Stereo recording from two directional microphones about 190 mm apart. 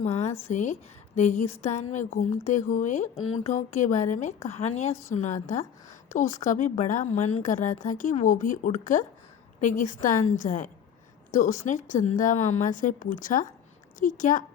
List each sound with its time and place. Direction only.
0.0 s a woman's voice: 35° left (ahead or behind)
3.2 s speech: 90° left
3.4 s a woman's voice: 40° left (ahead or behind)